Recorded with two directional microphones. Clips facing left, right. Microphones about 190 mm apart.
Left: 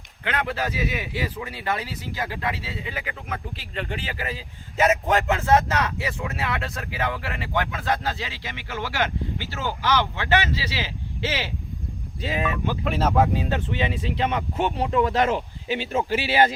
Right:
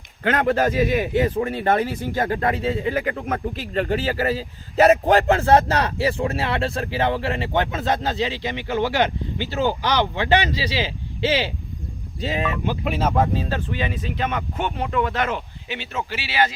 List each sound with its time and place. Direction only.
0.3 s speech: 45° right (ahead or behind); by 12.7 s 25° right (ahead or behind)
12.9 s speech: centre (ahead or behind); by 16.0 s 30° left (ahead or behind)